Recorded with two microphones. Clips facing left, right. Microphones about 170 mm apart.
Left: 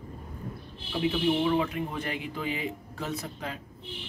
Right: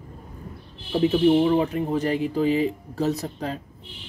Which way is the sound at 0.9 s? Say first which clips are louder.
Right 8 dB; 40° right (ahead or behind).